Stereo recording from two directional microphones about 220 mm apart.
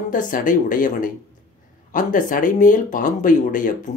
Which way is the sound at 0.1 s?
35° left (ahead or behind).